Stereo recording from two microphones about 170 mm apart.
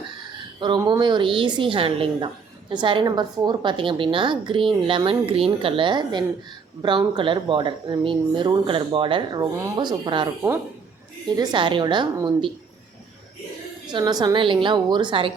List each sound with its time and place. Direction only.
0.9 s a woman's voice: 25° right (ahead or behind)
13.8 s a woman's voice: 25° right (ahead or behind)